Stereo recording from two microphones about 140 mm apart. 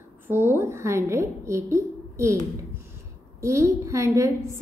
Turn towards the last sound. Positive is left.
turn(degrees=-20)  # may be behind; listen again after turning